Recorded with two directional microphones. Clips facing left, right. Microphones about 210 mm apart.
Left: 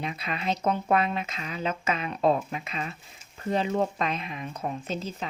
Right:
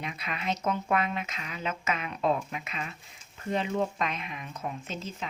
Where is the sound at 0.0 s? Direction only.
30° left (ahead or behind).